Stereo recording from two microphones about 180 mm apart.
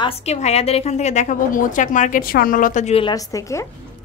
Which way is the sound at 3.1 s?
20° left (ahead or behind).